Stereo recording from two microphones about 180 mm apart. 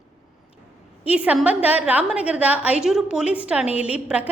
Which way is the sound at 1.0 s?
10° right (ahead or behind).